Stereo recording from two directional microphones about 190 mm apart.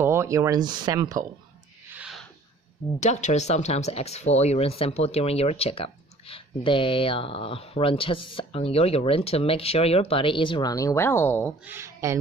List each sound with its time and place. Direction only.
0.0 s speech: 15° right (ahead or behind)
2.0 s a sound: centre (ahead or behind)
3.0 s speech: 40° left (ahead or behind); by 11.5 s 10° left (ahead or behind)
11.6 s speech: 15° right (ahead or behind)